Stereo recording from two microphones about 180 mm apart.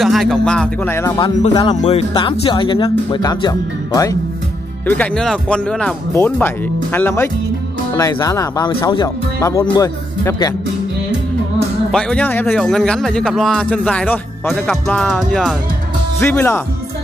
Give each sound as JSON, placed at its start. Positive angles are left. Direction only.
{"t": 0.0, "sound": "a man's voice", "side_deg": 0}
{"t": 1.5, "sound": "speech", "side_deg": 25}
{"t": 1.8, "sound": "speech", "side_deg": 35}
{"t": 2.1, "sound": "speech", "side_deg": 25}
{"t": 4.8, "sound": "a man's voice", "side_deg": 10}
{"t": 11.9, "sound": "a man's voice", "side_deg": 5}
{"t": 16.2, "sound": "speech", "side_deg": 10}